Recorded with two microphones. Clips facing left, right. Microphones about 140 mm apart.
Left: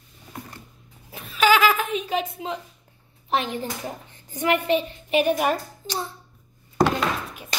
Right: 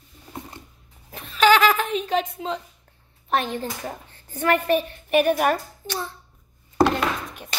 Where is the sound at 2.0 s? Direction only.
10° left (ahead or behind).